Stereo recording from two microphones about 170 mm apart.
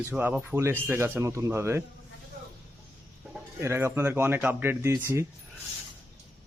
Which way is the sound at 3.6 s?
15° right (ahead or behind).